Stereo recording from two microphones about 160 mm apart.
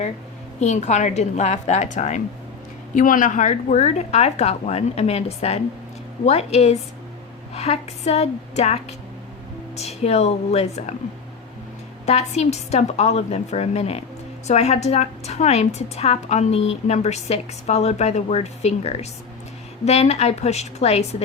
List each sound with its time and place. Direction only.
0.6 s a woman's voice: 45° left (ahead or behind)
12.0 s a woman's voice: 45° left (ahead or behind)